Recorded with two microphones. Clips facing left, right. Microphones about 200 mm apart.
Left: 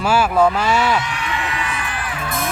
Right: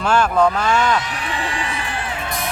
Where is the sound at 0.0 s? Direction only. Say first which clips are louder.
Left 1 dB; 5° left (ahead or behind).